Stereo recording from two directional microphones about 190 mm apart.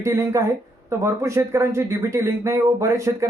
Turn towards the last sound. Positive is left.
turn(degrees=-15)  # may be behind; listen again after turning